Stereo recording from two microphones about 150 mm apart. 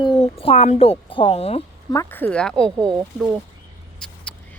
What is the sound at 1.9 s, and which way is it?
Speech, 20° left (ahead or behind).